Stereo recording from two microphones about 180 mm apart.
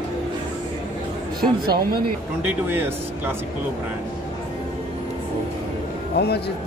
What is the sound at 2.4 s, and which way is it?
Speech, 10° right (ahead or behind).